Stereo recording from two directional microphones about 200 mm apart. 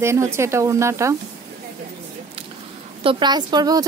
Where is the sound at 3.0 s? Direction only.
25° right (ahead or behind).